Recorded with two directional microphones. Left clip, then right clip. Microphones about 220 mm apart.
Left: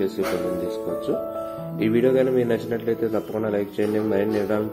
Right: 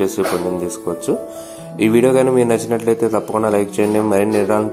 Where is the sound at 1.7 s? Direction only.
20° right (ahead or behind).